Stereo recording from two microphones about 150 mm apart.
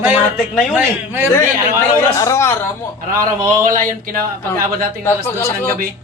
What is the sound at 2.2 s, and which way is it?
Speech, 20° left (ahead or behind).